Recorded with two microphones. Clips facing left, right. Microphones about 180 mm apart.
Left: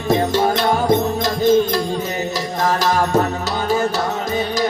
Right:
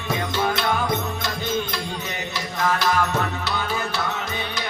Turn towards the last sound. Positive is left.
turn(degrees=40)  # may be behind; listen again after turning